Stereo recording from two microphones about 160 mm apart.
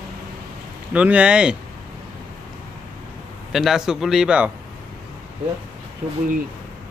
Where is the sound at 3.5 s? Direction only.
Centre (ahead or behind).